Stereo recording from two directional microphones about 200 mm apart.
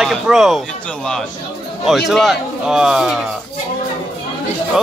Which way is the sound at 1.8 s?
Centre (ahead or behind).